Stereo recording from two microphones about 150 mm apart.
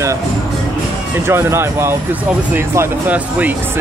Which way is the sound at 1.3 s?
15° right (ahead or behind).